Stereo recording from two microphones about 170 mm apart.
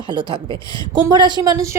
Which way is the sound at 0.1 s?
30° right (ahead or behind).